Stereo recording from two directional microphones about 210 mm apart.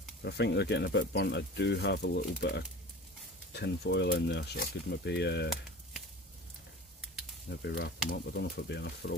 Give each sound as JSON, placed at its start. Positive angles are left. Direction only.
{"t": 0.2, "sound": "speech", "side_deg": 55}
{"t": 7.6, "sound": "speech", "side_deg": 50}